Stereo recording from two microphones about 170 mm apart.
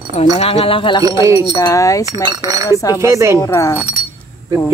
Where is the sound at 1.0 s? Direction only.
20° right (ahead or behind).